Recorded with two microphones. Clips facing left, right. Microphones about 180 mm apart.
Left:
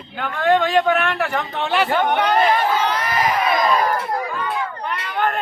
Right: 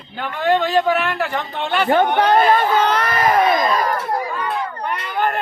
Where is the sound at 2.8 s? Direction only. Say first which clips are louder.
Right 3 dB; 60° right (ahead or behind).